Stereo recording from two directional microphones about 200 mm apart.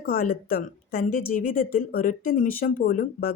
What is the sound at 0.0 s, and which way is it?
A woman's voice, 45° left (ahead or behind).